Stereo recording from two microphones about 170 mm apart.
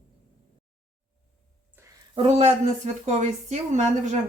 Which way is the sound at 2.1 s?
35° right (ahead or behind).